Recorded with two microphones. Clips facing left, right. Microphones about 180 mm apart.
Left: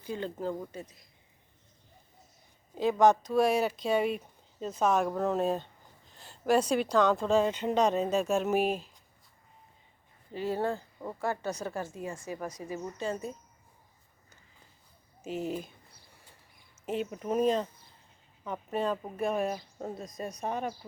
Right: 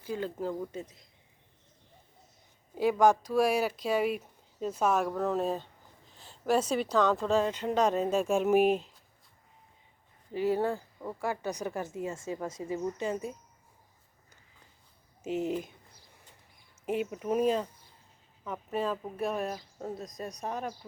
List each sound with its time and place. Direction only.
0.0 s speech: 5° right (ahead or behind)
0.7 s a woman's voice: 20° right (ahead or behind)
2.7 s speech: 10° right (ahead or behind)
10.3 s a woman's voice: 15° right (ahead or behind)
15.2 s a woman's voice: 20° right (ahead or behind)
16.8 s speech: 10° right (ahead or behind)